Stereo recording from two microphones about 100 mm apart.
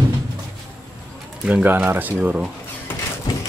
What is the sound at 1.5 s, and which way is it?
Speech, 15° right (ahead or behind).